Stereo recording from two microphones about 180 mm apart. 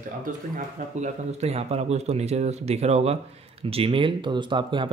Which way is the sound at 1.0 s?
35° right (ahead or behind).